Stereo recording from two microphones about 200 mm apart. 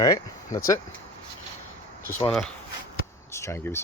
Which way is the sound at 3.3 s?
15° left (ahead or behind).